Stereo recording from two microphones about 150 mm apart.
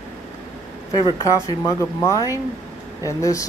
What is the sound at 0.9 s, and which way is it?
Speech, 25° left (ahead or behind).